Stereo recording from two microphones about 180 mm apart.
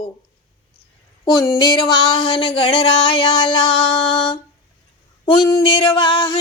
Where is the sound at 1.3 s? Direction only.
20° left (ahead or behind).